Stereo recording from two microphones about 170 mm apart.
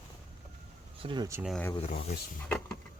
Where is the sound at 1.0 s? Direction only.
30° right (ahead or behind).